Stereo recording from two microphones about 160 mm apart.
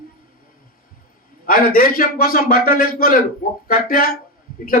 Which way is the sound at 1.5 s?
65° left (ahead or behind).